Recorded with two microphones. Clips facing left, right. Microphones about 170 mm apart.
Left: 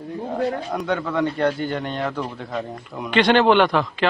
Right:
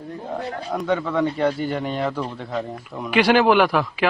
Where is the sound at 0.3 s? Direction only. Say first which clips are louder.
Left 3 dB; centre (ahead or behind).